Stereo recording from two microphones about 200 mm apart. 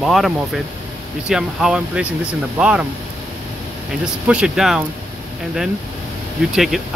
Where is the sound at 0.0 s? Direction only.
Centre (ahead or behind).